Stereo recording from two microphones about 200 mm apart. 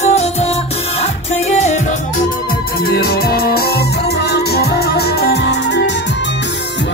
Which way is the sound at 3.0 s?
50° left (ahead or behind).